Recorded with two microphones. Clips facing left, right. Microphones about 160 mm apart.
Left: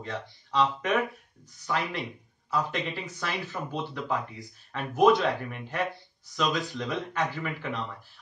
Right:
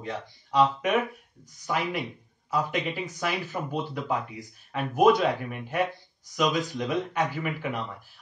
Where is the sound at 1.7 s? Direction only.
10° right (ahead or behind).